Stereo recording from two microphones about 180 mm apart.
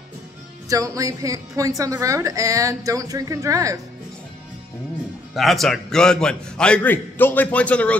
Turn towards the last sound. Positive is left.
turn(degrees=5)  # may be behind; listen again after turning